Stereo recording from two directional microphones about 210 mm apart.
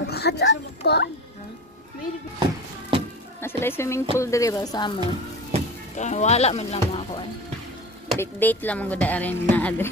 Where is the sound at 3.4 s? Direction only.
10° left (ahead or behind).